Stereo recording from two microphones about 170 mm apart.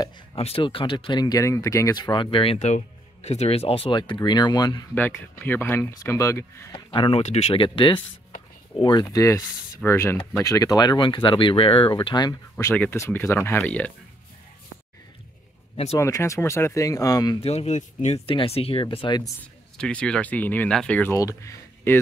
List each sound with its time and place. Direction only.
0.4 s speech: 35° left (ahead or behind)
4.9 s speech: 10° left (ahead or behind)
6.9 s speech: 30° left (ahead or behind); by 13.9 s 10° left (ahead or behind)
15.7 s speech: 35° left (ahead or behind)
16.0 s speech: 15° left (ahead or behind)
17.4 s speech: 40° left (ahead or behind)
19.8 s speech: 5° left (ahead or behind)